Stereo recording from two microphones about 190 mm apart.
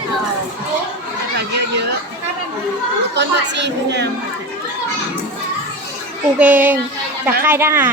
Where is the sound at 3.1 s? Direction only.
65° right (ahead or behind).